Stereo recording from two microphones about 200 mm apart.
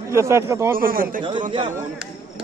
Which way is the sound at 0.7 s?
45° right (ahead or behind).